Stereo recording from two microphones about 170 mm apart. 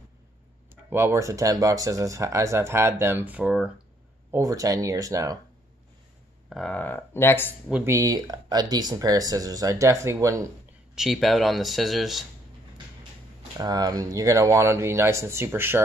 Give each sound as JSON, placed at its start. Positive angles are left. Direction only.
{"t": 0.8, "sound": "speech", "side_deg": -15}
{"t": 4.3, "sound": "speech", "side_deg": -20}
{"t": 6.5, "sound": "speech", "side_deg": 5}
{"t": 7.6, "sound": "speech", "side_deg": -5}
{"t": 7.9, "sound": "speech", "side_deg": -20}
{"t": 11.0, "sound": "speech", "side_deg": 0}
{"t": 13.6, "sound": "speech", "side_deg": -20}